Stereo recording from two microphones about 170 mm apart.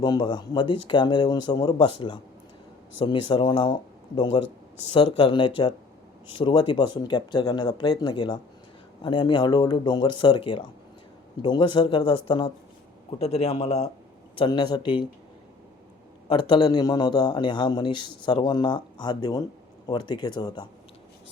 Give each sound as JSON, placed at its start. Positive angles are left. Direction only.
{"t": 0.0, "sound": "a man's voice", "side_deg": 25}
{"t": 16.3, "sound": "a man's voice", "side_deg": 30}